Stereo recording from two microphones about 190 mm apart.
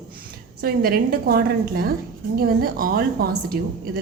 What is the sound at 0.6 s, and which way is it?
A woman's voice, 50° right (ahead or behind).